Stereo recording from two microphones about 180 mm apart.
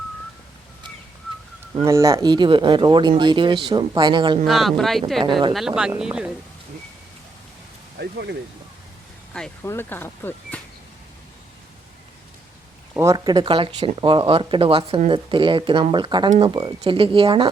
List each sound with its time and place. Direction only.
1.8 s speech: 15° right (ahead or behind)
4.4 s speech: centre (ahead or behind)
7.9 s speech: 70° right (ahead or behind)
9.6 s speech: 10° left (ahead or behind)
12.9 s speech: 15° right (ahead or behind)